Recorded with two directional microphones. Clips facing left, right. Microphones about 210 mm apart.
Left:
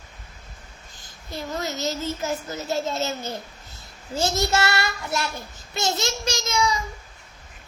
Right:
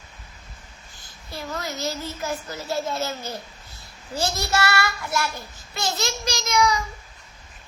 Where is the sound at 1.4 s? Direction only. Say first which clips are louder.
Left 2 dB; 20° left (ahead or behind).